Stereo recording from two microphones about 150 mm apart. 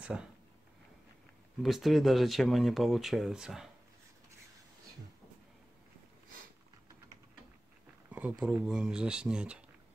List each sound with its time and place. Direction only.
0.0 s speech: 5° right (ahead or behind)
1.6 s speech: centre (ahead or behind)
8.1 s speech: 10° right (ahead or behind)